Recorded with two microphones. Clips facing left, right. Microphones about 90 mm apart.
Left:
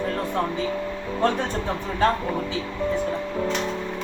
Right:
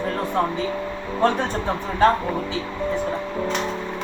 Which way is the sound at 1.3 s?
60° right (ahead or behind).